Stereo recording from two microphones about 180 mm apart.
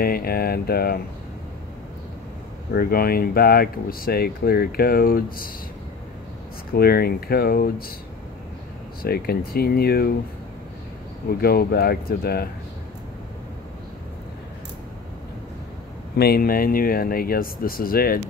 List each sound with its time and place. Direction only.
0.0 s speech: 55° left (ahead or behind)
2.7 s speech: 55° left (ahead or behind)
6.7 s speech: 55° left (ahead or behind)
9.0 s speech: 60° left (ahead or behind)
11.2 s speech: 60° left (ahead or behind)
16.2 s speech: 55° left (ahead or behind)